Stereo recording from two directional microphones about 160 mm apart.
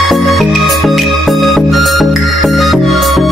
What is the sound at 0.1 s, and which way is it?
Music, centre (ahead or behind).